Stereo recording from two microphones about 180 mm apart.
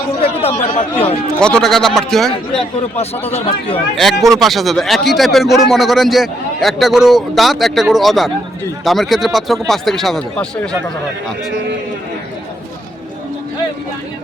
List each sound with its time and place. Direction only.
0.2 s speech: 35° left (ahead or behind)
1.4 s speech: 5° left (ahead or behind)
3.7 s speech: centre (ahead or behind)